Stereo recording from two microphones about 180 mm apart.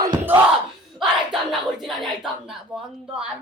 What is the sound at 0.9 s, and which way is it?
Speech, centre (ahead or behind).